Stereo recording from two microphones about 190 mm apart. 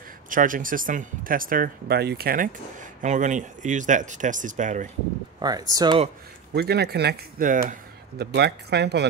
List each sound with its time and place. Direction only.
0.3 s speech: 45° right (ahead or behind)
5.4 s speech: 20° right (ahead or behind)
6.5 s speech: 60° right (ahead or behind)
8.2 s speech: 60° right (ahead or behind)